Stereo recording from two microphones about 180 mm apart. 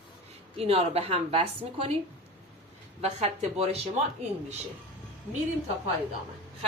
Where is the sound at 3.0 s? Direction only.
35° right (ahead or behind).